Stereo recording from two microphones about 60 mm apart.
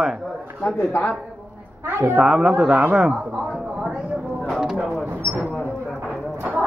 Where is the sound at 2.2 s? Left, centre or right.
Centre.